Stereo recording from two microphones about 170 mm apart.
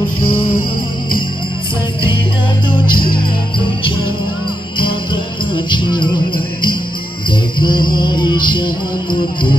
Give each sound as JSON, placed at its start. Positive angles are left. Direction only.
{"t": 3.2, "sound": "music", "side_deg": 30}
{"t": 4.7, "sound": "jingle bell", "side_deg": 30}
{"t": 7.2, "sound": "music", "side_deg": 25}